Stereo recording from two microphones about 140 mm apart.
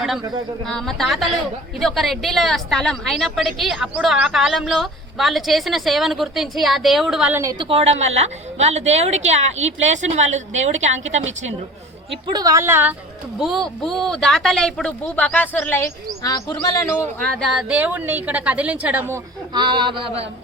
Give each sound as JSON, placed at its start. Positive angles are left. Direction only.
{"t": 0.7, "sound": "a woman's voice", "side_deg": 5}
{"t": 7.6, "sound": "a woman's voice", "side_deg": -45}
{"t": 12.3, "sound": "a woman's voice", "side_deg": -25}
{"t": 13.4, "sound": "a woman's voice", "side_deg": 0}
{"t": 16.2, "sound": "speech", "side_deg": 25}
{"t": 17.2, "sound": "speech", "side_deg": 5}
{"t": 19.5, "sound": "a man's voice", "side_deg": -35}